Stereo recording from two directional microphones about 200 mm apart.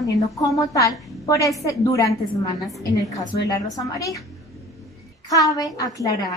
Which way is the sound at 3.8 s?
15° left (ahead or behind).